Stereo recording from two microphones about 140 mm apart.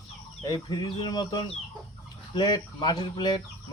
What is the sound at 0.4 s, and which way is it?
Speech, 30° left (ahead or behind).